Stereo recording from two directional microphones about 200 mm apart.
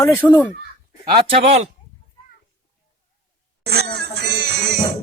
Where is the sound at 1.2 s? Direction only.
30° right (ahead or behind).